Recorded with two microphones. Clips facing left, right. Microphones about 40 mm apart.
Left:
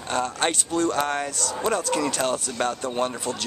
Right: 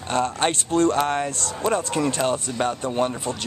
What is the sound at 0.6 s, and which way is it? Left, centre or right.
Speech, right.